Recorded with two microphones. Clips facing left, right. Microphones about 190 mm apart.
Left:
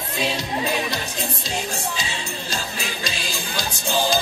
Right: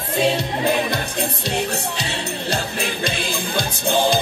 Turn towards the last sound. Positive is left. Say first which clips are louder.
# right 4 dB
turn(degrees=-55)  # may be behind; listen again after turning